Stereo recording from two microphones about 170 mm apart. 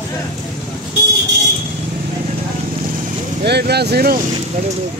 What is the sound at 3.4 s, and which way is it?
Speech, 75° right (ahead or behind).